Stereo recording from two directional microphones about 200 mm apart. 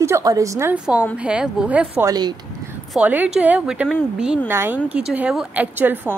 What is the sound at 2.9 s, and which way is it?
Speech, 5° right (ahead or behind).